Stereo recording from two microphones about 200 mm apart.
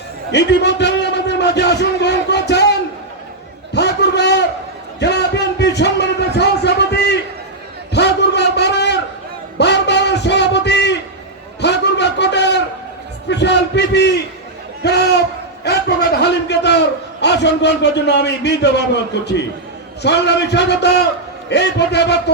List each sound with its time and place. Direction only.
0.3 s a man's voice: 60° left (ahead or behind)
3.7 s a sound: 60° left (ahead or behind)
19.2 s a man's voice: 60° left (ahead or behind)